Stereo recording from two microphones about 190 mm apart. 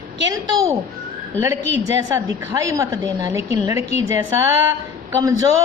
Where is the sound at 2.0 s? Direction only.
15° right (ahead or behind).